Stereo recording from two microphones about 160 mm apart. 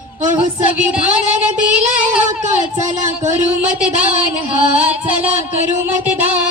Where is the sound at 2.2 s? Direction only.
50° right (ahead or behind).